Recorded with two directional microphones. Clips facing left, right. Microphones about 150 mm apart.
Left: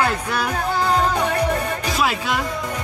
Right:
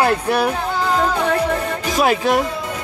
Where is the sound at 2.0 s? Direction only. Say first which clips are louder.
Right 7 dB; 50° right (ahead or behind).